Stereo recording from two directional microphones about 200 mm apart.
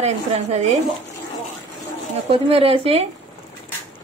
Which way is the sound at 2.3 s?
30° right (ahead or behind).